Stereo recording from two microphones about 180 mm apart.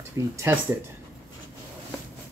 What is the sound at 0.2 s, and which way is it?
Speech, 20° right (ahead or behind).